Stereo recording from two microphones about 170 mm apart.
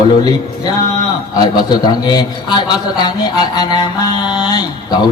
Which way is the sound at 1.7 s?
25° left (ahead or behind).